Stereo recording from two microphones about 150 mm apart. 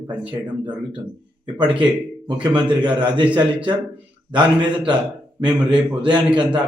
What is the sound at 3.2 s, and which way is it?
Speech, 10° right (ahead or behind).